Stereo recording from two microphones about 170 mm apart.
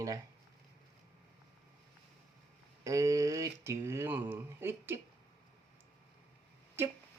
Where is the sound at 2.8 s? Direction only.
20° right (ahead or behind).